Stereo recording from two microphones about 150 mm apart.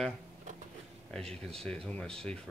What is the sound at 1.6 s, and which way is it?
Speech, 5° left (ahead or behind).